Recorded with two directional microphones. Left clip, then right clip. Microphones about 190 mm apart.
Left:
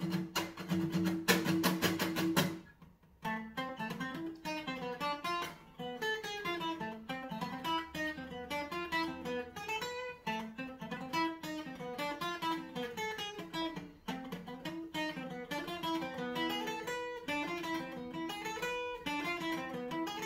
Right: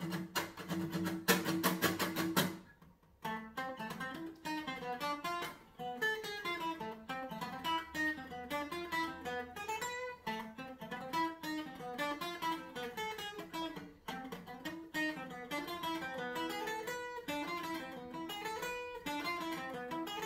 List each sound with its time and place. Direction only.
0.1 s music: 5° right (ahead or behind)
14.6 s guitar: 5° right (ahead or behind)
16.5 s music: centre (ahead or behind)